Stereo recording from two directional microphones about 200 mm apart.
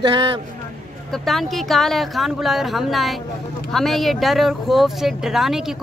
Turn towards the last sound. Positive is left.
turn(degrees=0)  # may be behind; listen again after turning